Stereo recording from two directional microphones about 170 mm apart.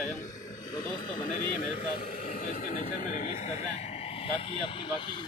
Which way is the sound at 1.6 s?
50° left (ahead or behind).